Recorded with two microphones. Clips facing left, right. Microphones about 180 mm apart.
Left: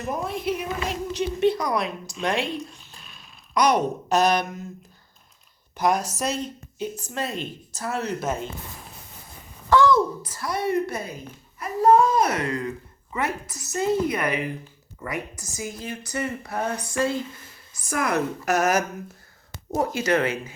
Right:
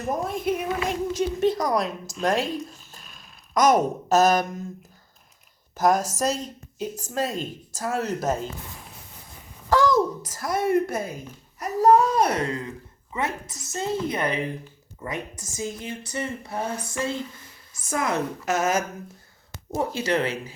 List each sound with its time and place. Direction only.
0.1 s a woman's voice: 45° right (ahead or behind)
5.7 s speech: 45° right (ahead or behind)
9.6 s a woman's voice: 40° right (ahead or behind)
11.6 s speech: 35° right (ahead or behind)
19.8 s speech: 30° right (ahead or behind)